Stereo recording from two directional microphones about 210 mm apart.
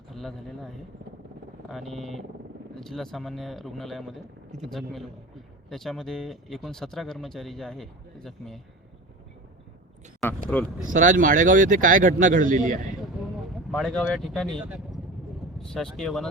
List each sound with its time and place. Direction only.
0.1 s a man's voice: centre (ahead or behind)
10.2 s speech: 5° left (ahead or behind)
10.8 s speech: 40° right (ahead or behind)
13.7 s speech: centre (ahead or behind)
15.7 s speech: centre (ahead or behind)